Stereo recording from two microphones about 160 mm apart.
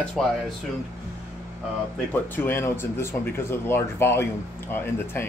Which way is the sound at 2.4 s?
15° left (ahead or behind).